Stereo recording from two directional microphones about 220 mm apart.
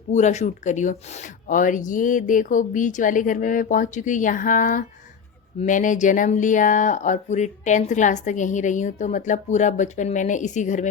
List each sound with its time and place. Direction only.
0.1 s speech: 30° left (ahead or behind)